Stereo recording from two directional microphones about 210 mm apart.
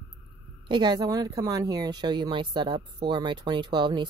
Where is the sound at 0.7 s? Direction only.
20° right (ahead or behind).